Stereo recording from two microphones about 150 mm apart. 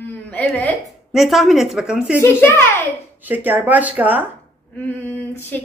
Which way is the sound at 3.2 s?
10° right (ahead or behind).